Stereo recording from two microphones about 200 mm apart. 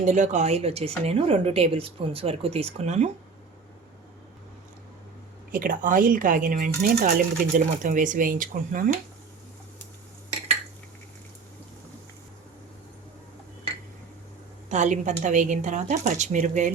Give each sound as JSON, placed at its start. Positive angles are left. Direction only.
{"t": 0.0, "sound": "speech", "side_deg": -35}
{"t": 5.5, "sound": "a woman's voice", "side_deg": -45}
{"t": 14.7, "sound": "a woman's voice", "side_deg": -35}